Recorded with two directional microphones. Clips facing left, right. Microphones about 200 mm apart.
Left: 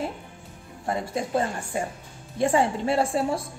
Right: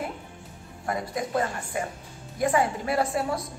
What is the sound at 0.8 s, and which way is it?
A woman's voice, 25° left (ahead or behind).